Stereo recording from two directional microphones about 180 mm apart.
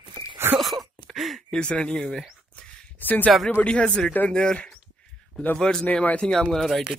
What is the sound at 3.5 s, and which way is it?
Speech, 5° left (ahead or behind).